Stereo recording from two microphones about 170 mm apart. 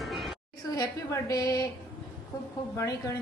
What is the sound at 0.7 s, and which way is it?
A woman's voice, 20° left (ahead or behind).